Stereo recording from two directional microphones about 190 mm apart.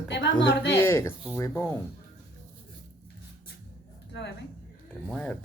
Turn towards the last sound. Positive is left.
turn(degrees=0)  # may be behind; listen again after turning